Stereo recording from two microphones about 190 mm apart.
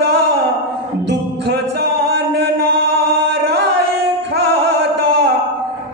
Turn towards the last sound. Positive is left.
turn(degrees=-65)  # may be behind; listen again after turning